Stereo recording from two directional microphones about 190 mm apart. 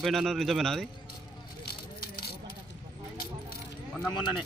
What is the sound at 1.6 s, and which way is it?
Keys jangling, 55° left (ahead or behind).